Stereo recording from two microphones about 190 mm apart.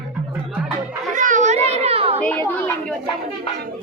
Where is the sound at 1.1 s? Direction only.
40° right (ahead or behind).